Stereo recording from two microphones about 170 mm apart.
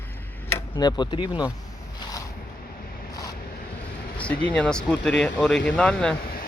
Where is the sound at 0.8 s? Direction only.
25° left (ahead or behind).